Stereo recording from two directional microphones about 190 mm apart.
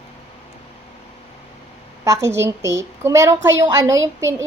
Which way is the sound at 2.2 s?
15° right (ahead or behind).